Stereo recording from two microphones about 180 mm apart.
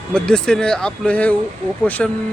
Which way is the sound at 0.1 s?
5° left (ahead or behind).